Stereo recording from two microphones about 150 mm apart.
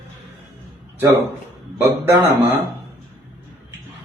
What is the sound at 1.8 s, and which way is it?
Speech, 15° right (ahead or behind).